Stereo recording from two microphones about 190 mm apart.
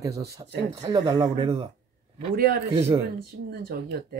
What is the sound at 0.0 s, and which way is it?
Speech, 20° right (ahead or behind).